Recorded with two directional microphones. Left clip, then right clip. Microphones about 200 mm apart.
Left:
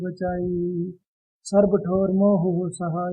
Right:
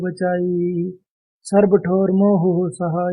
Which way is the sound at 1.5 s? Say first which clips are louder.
Right 4 dB; 20° right (ahead or behind).